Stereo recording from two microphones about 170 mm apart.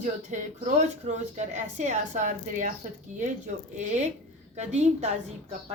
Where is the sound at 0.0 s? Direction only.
45° right (ahead or behind).